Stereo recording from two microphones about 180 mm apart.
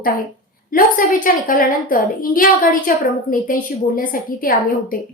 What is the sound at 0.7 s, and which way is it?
A woman's voice, 50° left (ahead or behind).